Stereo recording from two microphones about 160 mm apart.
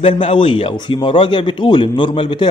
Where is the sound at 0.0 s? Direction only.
35° left (ahead or behind).